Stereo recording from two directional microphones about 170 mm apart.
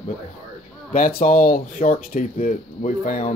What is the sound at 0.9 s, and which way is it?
Speech, 60° left (ahead or behind).